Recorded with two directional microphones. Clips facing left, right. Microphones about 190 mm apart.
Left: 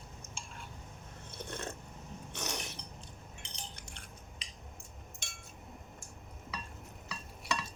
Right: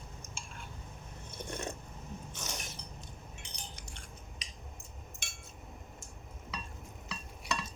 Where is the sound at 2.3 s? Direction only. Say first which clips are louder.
Left 7 dB; 65° left (ahead or behind).